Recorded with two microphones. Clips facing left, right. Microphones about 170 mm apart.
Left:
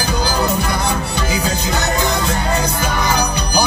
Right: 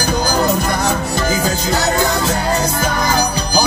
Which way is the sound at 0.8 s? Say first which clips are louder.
Right 3 dB; 45° right (ahead or behind).